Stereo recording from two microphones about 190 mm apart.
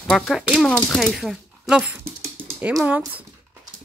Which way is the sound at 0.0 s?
Centre (ahead or behind).